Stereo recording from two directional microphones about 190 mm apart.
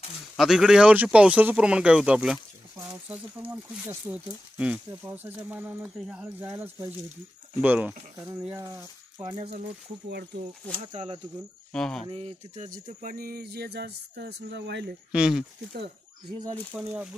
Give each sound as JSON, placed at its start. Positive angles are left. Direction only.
{"t": 0.4, "sound": "speech", "side_deg": 0}
{"t": 9.3, "sound": "speech", "side_deg": -30}
{"t": 10.9, "sound": "speech", "side_deg": -30}
{"t": 11.7, "sound": "speech", "side_deg": 5}
{"t": 12.1, "sound": "speech", "side_deg": -30}
{"t": 12.6, "sound": "speech", "side_deg": -45}
{"t": 15.1, "sound": "speech", "side_deg": -5}
{"t": 16.7, "sound": "speech", "side_deg": -5}